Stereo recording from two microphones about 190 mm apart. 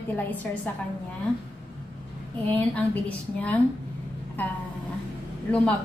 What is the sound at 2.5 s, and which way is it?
Speech, 10° left (ahead or behind).